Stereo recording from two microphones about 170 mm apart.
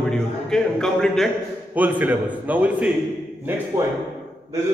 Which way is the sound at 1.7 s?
10° right (ahead or behind).